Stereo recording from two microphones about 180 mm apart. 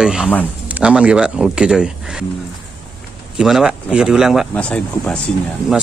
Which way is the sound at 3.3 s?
Centre (ahead or behind).